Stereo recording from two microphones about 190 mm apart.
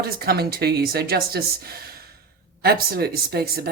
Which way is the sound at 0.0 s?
55° right (ahead or behind).